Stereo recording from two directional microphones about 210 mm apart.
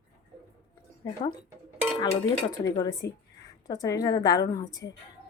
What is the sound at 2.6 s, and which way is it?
A woman's voice, 15° left (ahead or behind).